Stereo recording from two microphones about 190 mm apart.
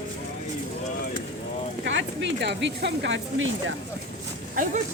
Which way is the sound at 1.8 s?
80° right.